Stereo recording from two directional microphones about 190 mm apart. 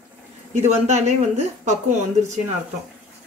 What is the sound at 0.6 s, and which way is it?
Speech, 35° right (ahead or behind).